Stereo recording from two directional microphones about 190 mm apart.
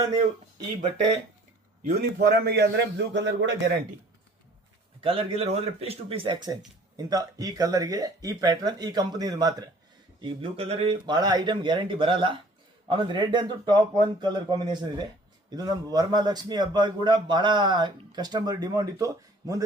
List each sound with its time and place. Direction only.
2.0 s a man's voice: 60° right (ahead or behind)
4.9 s a man's voice: 30° right (ahead or behind)